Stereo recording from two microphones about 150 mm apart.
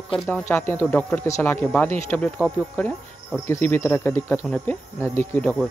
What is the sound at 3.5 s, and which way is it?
Speech, 15° left (ahead or behind).